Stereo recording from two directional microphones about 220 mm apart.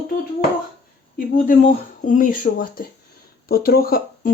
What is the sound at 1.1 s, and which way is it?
Speech, 40° left (ahead or behind).